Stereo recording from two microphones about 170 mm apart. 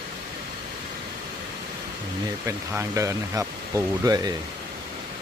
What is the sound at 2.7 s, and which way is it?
Speech, 20° right (ahead or behind).